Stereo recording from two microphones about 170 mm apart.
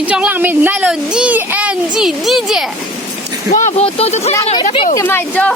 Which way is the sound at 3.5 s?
40° left (ahead or behind).